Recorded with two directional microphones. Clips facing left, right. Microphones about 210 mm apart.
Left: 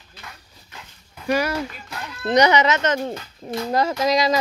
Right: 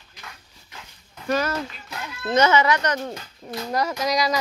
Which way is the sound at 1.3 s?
10° left (ahead or behind).